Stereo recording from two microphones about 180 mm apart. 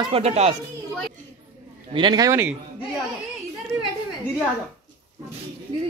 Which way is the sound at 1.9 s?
25° right (ahead or behind).